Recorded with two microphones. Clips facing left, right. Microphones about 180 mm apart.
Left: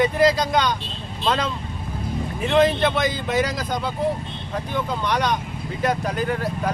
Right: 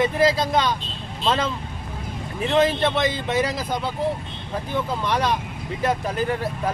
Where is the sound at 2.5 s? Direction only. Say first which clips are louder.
Left 1 dB; centre (ahead or behind).